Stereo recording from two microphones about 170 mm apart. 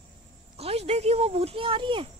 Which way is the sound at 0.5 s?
35° right (ahead or behind).